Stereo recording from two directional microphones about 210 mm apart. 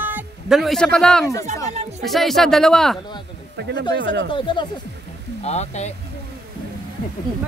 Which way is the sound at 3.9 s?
60° right (ahead or behind).